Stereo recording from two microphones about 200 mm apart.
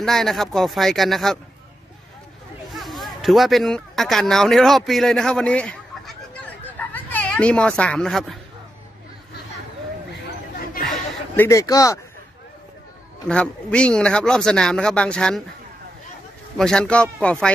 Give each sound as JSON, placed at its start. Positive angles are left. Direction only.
{"t": 0.0, "sound": "speech", "side_deg": 0}
{"t": 2.7, "sound": "speech", "side_deg": 0}
{"t": 10.9, "sound": "a sound", "side_deg": 10}
{"t": 13.3, "sound": "speech", "side_deg": 5}
{"t": 16.5, "sound": "speech", "side_deg": 5}